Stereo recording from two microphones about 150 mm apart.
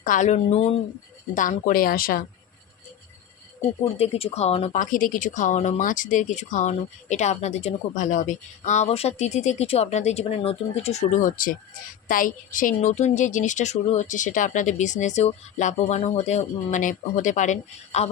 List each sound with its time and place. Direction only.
0.0 s speech: 60° left (ahead or behind)
1.4 s a woman's voice: 60° left (ahead or behind)
3.9 s speech: 45° left (ahead or behind)